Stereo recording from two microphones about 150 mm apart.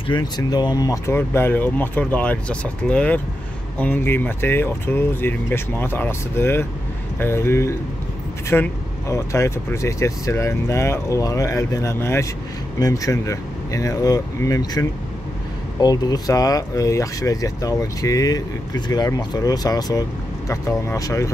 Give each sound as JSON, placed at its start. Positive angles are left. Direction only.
{"t": 0.1, "sound": "speech", "side_deg": 25}